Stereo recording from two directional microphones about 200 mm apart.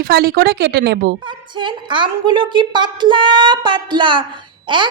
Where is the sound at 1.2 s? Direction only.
25° right (ahead or behind).